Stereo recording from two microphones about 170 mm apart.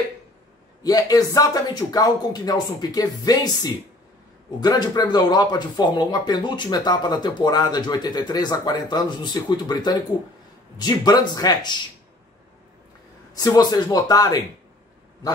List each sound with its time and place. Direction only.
0.8 s speech: 20° left (ahead or behind)
13.4 s speech: 20° left (ahead or behind)